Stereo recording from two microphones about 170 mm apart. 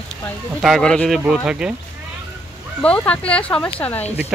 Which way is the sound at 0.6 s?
Centre (ahead or behind).